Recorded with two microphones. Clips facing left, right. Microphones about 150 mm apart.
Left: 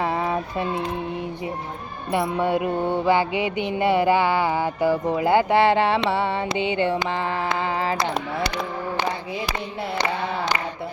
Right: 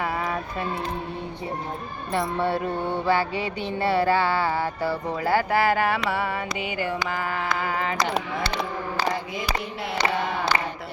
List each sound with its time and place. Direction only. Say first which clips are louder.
0.0 s a sound: left 4 dB; 25° left (ahead or behind)
2.1 s speech: left 3 dB; 10° left (ahead or behind)
3.1 s music: left 2 dB; 15° left (ahead or behind)